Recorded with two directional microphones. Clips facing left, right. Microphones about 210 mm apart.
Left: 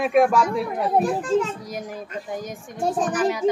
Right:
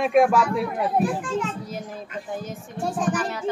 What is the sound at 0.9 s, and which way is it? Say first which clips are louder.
Speech: left 3 dB; 40° left (ahead or behind).